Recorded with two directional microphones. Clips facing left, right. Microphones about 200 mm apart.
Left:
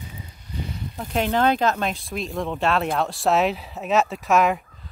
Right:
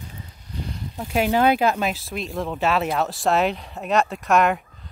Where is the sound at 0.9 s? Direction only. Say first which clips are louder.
Right 2 dB; 10° right (ahead or behind).